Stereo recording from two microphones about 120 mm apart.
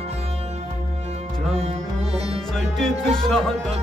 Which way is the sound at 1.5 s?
60° right (ahead or behind).